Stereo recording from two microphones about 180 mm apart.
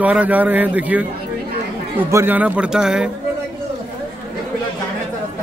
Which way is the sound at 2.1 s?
10° right (ahead or behind).